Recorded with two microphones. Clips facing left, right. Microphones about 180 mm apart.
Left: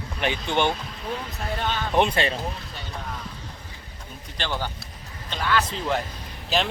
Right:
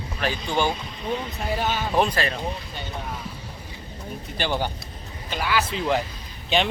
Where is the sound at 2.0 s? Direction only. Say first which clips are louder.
Left 1 dB; 25° left (ahead or behind).